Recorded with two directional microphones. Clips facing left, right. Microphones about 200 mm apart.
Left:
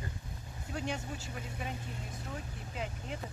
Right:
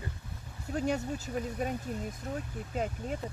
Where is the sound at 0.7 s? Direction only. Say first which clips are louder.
Right 7 dB; 40° right (ahead or behind).